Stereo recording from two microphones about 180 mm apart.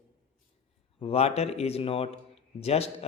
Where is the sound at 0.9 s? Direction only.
35° left (ahead or behind).